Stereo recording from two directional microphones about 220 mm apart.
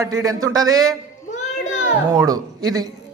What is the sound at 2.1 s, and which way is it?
Speech, 15° right (ahead or behind).